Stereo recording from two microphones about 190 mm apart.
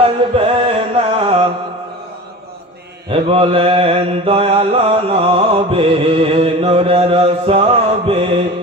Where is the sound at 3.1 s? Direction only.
30° right (ahead or behind).